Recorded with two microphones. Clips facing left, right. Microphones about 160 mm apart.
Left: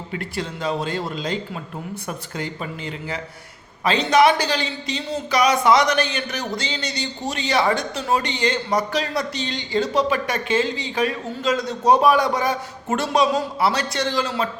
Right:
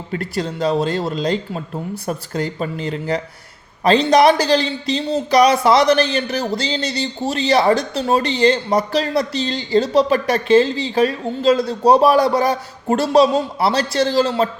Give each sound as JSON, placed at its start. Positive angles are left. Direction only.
{"t": 0.1, "sound": "speech", "side_deg": -40}